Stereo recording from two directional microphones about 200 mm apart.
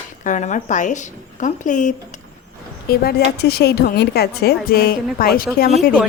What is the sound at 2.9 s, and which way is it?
Speech, 50° left (ahead or behind).